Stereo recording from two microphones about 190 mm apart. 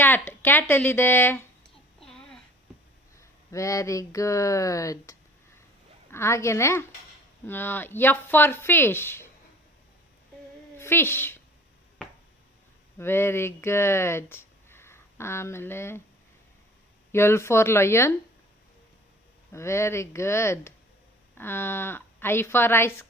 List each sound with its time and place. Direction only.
0.0 s speech: 10° left (ahead or behind)
2.0 s babbling: 5° left (ahead or behind)
3.2 s speech: 15° left (ahead or behind)
10.8 s a woman's voice: 10° left (ahead or behind)
13.0 s speech: 10° left (ahead or behind)
17.1 s speech: 15° left (ahead or behind)
19.5 s speech: 15° left (ahead or behind)